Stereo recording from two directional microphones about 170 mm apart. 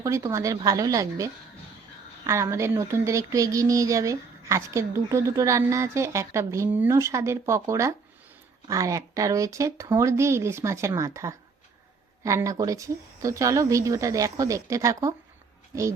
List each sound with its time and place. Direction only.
0.0 s speech: 20° right (ahead or behind)